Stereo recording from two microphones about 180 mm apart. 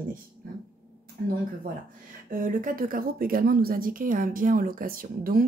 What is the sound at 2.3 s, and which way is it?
A woman's voice, 45° right (ahead or behind).